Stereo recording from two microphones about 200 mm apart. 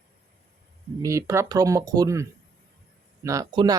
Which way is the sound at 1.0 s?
15° right (ahead or behind).